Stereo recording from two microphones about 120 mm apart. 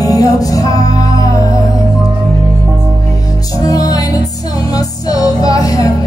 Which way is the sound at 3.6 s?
30° left (ahead or behind).